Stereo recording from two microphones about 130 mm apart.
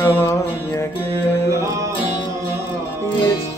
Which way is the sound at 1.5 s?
25° right (ahead or behind).